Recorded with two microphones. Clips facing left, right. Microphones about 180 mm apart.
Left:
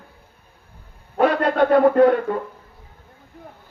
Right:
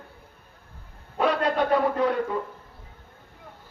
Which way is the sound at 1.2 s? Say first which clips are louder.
Left 6 dB; 60° left (ahead or behind).